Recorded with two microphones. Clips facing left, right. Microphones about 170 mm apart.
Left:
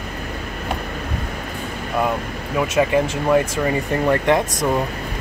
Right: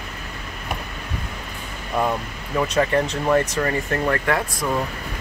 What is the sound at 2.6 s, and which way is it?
Speech, 10° left (ahead or behind).